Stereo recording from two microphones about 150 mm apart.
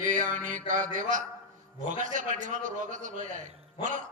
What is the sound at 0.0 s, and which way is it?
Mantra, 60° right (ahead or behind).